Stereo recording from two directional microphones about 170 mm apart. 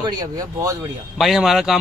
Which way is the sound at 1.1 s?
Centre (ahead or behind).